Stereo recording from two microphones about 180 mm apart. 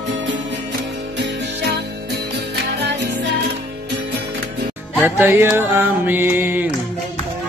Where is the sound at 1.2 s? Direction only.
65° right (ahead or behind).